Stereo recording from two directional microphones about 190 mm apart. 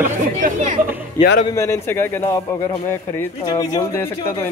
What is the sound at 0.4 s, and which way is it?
Speech, 45° right (ahead or behind).